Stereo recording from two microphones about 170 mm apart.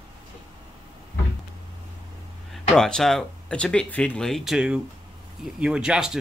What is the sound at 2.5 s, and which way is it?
Speech, 5° left (ahead or behind).